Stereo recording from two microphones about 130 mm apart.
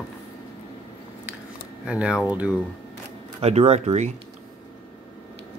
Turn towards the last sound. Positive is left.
turn(degrees=-60)  # may be behind; listen again after turning